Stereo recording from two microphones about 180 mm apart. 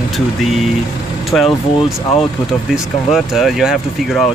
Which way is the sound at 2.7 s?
Centre (ahead or behind).